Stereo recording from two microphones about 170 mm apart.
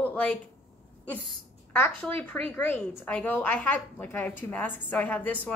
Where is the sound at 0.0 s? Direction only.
5° left (ahead or behind).